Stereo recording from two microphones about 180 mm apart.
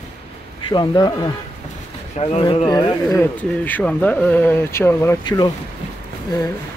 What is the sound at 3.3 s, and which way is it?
Speech, 10° left (ahead or behind).